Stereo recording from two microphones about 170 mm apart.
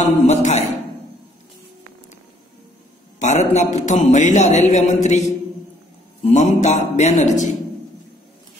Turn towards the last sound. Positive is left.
turn(degrees=45)  # may be behind; listen again after turning